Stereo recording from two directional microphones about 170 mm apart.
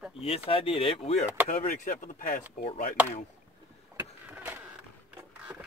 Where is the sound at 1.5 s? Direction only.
50° left (ahead or behind).